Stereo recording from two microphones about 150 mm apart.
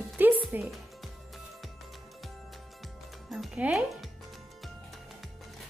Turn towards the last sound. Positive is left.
turn(degrees=-5)  # may be behind; listen again after turning